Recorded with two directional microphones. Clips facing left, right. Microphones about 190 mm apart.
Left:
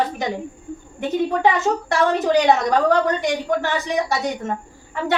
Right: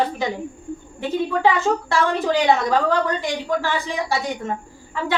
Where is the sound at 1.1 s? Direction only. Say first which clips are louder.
Left 1 dB; 20° left (ahead or behind).